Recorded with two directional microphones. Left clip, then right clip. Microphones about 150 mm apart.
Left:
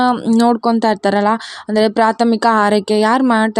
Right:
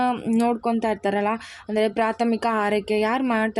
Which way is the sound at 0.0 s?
45° left (ahead or behind).